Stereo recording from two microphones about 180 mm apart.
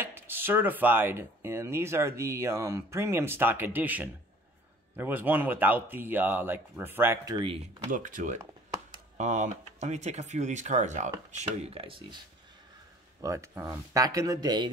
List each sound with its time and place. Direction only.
0.0 s speech: 10° right (ahead or behind)
7.9 s speech: 45° right (ahead or behind); by 12.2 s 30° right (ahead or behind)
13.2 s speech: 15° right (ahead or behind)